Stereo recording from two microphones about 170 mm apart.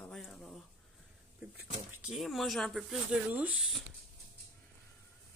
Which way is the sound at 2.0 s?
Centre (ahead or behind).